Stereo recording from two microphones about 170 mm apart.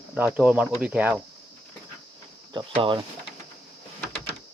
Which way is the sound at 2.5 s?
30° right (ahead or behind).